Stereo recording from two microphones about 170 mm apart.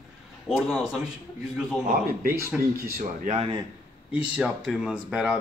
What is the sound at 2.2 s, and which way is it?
Speech, 60° right (ahead or behind).